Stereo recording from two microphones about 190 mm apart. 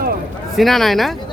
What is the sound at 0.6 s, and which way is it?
Speech, centre (ahead or behind).